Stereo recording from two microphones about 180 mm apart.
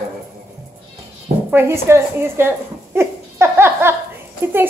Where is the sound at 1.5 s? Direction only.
15° right (ahead or behind).